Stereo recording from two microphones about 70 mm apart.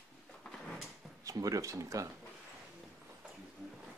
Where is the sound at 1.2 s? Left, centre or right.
Right.